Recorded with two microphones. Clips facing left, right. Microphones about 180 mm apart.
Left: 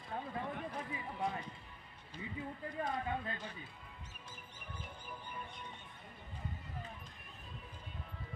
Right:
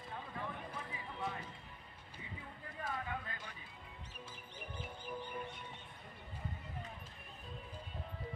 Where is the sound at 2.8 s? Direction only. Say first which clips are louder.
Left 4 dB; 35° left (ahead or behind).